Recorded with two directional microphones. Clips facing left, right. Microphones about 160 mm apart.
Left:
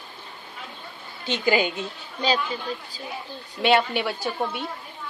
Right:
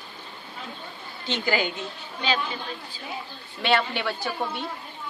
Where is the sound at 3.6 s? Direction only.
15° left (ahead or behind).